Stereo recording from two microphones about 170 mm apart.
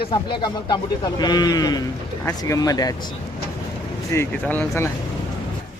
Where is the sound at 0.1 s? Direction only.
25° left (ahead or behind).